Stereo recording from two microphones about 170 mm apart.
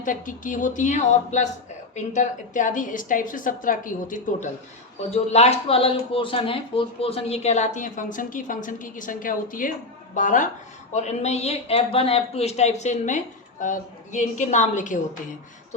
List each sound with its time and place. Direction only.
0.0 s a woman's voice: 50° left (ahead or behind)
5.1 s a woman's voice: 40° left (ahead or behind)